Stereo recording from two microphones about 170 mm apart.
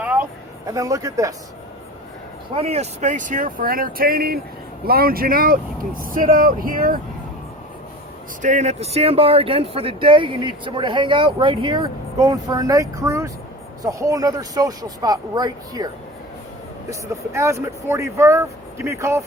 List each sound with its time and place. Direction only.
0.0 s a sound: 10° right (ahead or behind)
0.7 s speech: 20° right (ahead or behind)
2.6 s speech: 40° right (ahead or behind); by 7.0 s 55° right (ahead or behind)
8.4 s speech: 45° right (ahead or behind); by 15.9 s 20° right (ahead or behind)
16.9 s speech: 15° right (ahead or behind)